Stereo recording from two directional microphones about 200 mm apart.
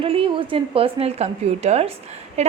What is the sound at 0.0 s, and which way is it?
Speech, 25° right (ahead or behind).